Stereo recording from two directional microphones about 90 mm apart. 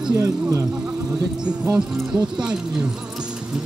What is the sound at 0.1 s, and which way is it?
Speech, 35° right (ahead or behind).